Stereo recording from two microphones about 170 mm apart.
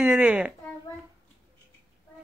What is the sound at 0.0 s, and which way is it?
Speech, 5° right (ahead or behind).